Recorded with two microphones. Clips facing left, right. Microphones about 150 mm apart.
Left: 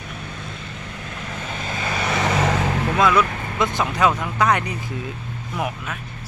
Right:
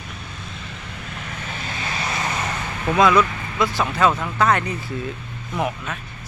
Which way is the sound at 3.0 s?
Centre (ahead or behind).